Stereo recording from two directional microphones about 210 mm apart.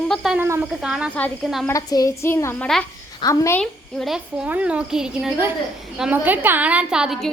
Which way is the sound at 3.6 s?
Centre (ahead or behind).